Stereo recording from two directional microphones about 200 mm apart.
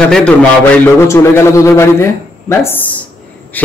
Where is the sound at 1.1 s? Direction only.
15° left (ahead or behind).